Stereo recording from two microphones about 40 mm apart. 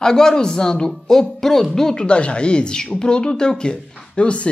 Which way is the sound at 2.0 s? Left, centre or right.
Left.